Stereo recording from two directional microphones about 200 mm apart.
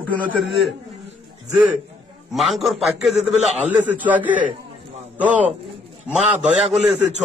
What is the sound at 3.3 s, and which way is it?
Speech, 35° right (ahead or behind).